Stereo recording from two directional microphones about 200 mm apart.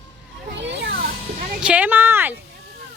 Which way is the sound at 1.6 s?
5° right (ahead or behind).